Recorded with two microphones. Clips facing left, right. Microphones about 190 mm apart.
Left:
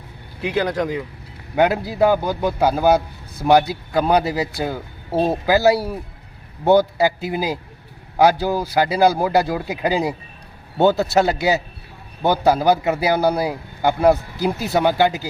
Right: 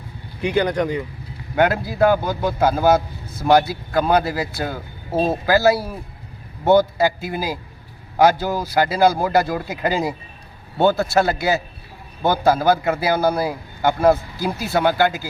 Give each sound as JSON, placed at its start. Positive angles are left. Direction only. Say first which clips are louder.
{"t": 0.4, "sound": "speech", "louder": "right 2 dB", "side_deg": 0}
{"t": 1.5, "sound": "a man's voice", "louder": "left 1 dB", "side_deg": 15}